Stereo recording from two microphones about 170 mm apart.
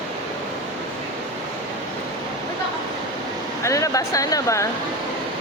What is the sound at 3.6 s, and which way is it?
Speech, 20° left (ahead or behind).